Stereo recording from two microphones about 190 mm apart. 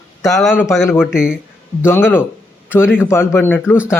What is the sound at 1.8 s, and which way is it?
A man's voice, 10° left (ahead or behind).